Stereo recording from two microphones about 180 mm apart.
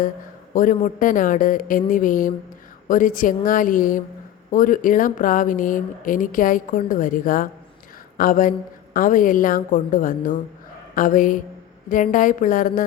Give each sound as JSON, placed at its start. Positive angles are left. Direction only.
{"t": 0.5, "sound": "speech", "side_deg": 50}